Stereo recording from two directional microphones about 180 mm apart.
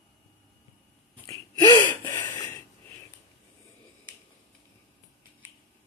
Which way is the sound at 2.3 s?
10° left (ahead or behind).